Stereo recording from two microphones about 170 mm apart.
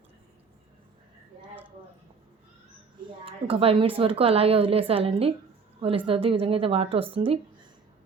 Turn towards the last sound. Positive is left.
turn(degrees=-35)  # may be behind; listen again after turning